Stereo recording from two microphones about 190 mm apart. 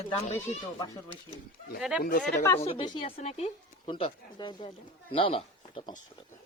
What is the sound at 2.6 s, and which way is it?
Speech, 30° left (ahead or behind).